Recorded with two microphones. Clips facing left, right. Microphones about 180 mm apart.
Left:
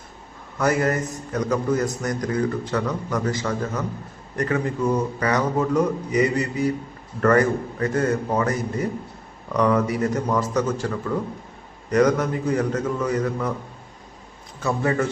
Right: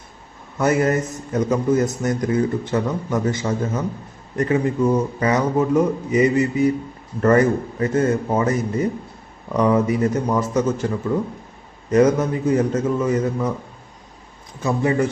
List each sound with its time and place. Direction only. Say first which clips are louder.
0.6 s a man's voice: right 3 dB; 20° right (ahead or behind)
14.6 s speech: right 3 dB; 20° right (ahead or behind)